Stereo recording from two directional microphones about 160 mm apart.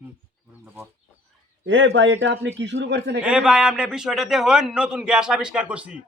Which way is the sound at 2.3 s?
90° right.